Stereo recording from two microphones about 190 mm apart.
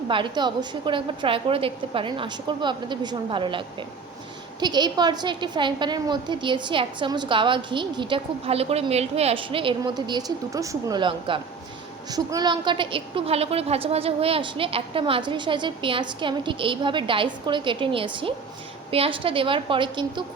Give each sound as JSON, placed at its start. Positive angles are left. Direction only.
{"t": 0.1, "sound": "a woman's voice", "side_deg": -25}